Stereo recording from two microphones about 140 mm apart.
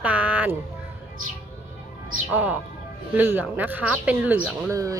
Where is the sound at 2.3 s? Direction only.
10° right (ahead or behind).